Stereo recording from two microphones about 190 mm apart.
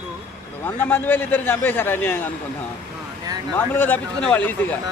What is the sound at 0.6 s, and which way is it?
A man's voice, 10° left (ahead or behind).